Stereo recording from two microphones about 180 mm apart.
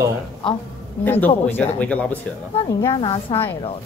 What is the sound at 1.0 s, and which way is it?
Speech, 10° left (ahead or behind).